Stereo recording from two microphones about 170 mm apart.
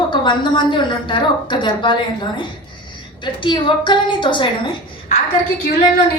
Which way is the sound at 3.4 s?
25° left (ahead or behind).